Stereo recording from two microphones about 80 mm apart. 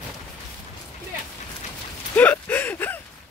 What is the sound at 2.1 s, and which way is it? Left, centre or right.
Gasp, left.